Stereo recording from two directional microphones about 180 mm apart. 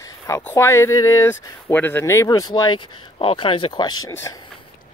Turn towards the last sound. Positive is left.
turn(degrees=15)  # may be behind; listen again after turning